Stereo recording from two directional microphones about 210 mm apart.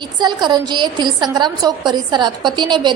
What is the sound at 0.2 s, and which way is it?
A woman's voice, 20° right (ahead or behind).